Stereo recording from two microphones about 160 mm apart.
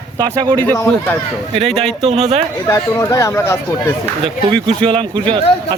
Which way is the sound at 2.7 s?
15° left (ahead or behind).